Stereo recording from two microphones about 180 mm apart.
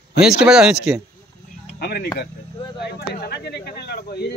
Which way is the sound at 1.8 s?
60° left (ahead or behind).